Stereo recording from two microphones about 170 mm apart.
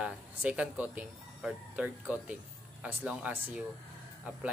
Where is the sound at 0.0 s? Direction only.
5° right (ahead or behind).